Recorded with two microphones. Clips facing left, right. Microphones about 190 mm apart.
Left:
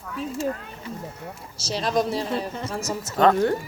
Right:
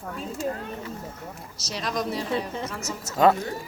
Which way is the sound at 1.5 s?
30° left (ahead or behind).